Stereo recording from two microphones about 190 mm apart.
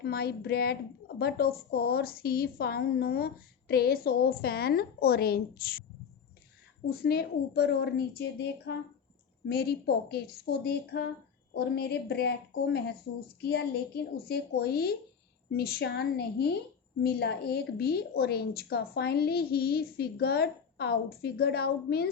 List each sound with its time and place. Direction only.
0.0 s a woman's voice: 55° left (ahead or behind)
6.9 s a woman's voice: 55° left (ahead or behind)